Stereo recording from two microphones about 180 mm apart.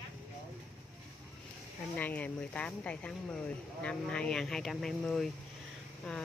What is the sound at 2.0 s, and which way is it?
Speech, 10° left (ahead or behind).